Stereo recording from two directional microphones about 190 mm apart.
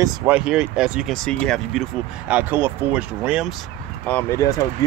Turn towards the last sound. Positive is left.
turn(degrees=15)  # may be behind; listen again after turning